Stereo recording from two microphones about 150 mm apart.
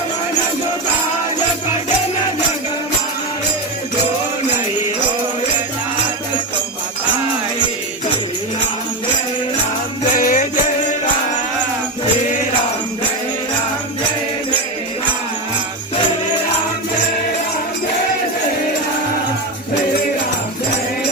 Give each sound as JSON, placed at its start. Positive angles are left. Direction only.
{"t": 10.2, "sound": "music", "side_deg": 65}